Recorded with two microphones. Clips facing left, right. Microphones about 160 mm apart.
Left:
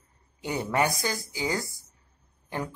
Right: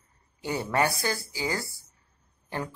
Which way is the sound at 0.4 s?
15° left (ahead or behind).